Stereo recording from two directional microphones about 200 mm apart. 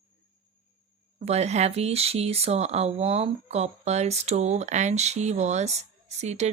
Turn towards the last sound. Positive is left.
turn(degrees=-35)  # may be behind; listen again after turning